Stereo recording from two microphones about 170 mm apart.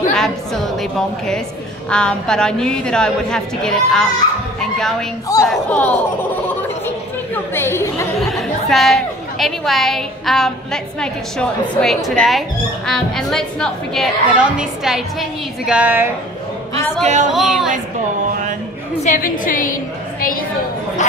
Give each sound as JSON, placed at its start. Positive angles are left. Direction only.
{"t": 0.1, "sound": "a woman's voice", "side_deg": 5}
{"t": 7.5, "sound": "chatter", "side_deg": 15}
{"t": 8.3, "sound": "a woman's voice", "side_deg": 0}
{"t": 17.0, "sound": "speech", "side_deg": -45}
{"t": 17.3, "sound": "speech", "side_deg": 0}
{"t": 19.0, "sound": "a woman's voice", "side_deg": 50}
{"t": 21.0, "sound": "speech", "side_deg": 45}